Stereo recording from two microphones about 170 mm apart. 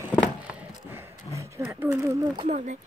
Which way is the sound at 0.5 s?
15° right (ahead or behind).